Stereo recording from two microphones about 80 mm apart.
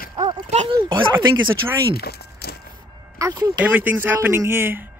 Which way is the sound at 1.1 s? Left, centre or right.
Right.